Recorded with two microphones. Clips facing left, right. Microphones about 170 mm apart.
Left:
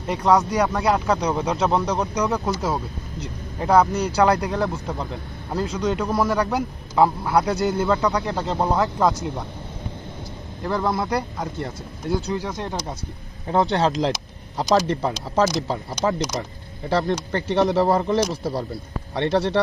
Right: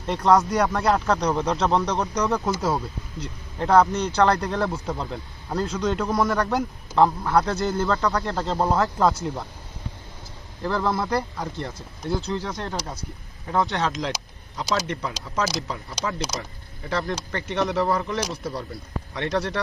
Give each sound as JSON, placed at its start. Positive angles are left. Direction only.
{"t": 0.1, "sound": "a man's voice", "side_deg": 0}
{"t": 8.2, "sound": "speech", "side_deg": 0}
{"t": 10.6, "sound": "a man's voice", "side_deg": 15}
{"t": 13.5, "sound": "speech", "side_deg": 30}